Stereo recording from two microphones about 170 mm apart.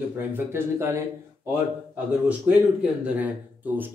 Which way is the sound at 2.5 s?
5° right (ahead or behind).